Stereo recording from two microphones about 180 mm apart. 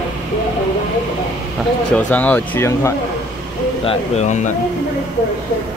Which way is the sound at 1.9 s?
10° left (ahead or behind).